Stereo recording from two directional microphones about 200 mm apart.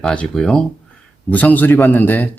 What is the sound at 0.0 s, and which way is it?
Speech, 5° left (ahead or behind).